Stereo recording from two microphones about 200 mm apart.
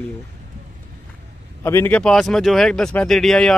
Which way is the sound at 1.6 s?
10° left (ahead or behind).